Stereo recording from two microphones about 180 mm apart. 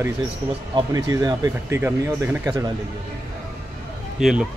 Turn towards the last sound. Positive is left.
turn(degrees=-5)  # may be behind; listen again after turning